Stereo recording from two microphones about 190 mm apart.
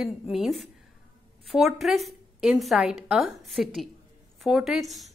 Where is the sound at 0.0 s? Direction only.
Centre (ahead or behind).